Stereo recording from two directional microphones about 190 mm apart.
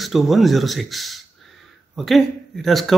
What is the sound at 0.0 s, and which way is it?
A man's voice, centre (ahead or behind).